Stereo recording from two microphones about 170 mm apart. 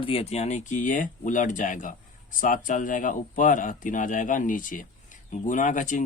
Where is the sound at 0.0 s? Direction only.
35° left (ahead or behind).